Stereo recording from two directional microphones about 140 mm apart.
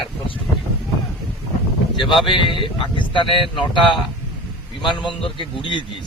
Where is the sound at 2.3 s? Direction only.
35° left (ahead or behind).